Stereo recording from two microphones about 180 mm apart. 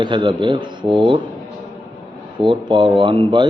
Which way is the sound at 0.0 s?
25° right (ahead or behind).